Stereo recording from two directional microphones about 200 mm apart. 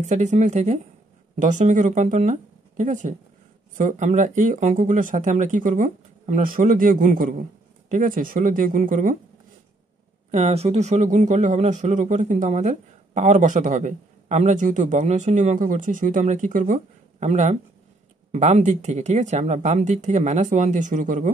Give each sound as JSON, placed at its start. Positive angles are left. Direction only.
{"t": 0.0, "sound": "a man's voice", "side_deg": -35}
{"t": 10.3, "sound": "a man's voice", "side_deg": -30}